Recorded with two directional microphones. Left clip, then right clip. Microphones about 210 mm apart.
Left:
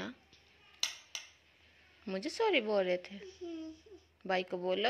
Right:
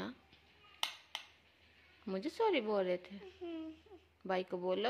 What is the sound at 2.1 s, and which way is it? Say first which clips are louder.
A woman's voice: left 2 dB; 5° right (ahead or behind).